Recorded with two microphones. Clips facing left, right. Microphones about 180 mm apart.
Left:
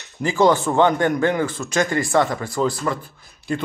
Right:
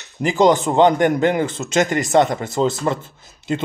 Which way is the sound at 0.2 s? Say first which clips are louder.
Right 2 dB; 20° right (ahead or behind).